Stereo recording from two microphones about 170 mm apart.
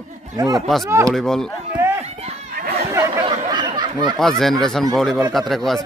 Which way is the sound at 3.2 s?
25° right (ahead or behind).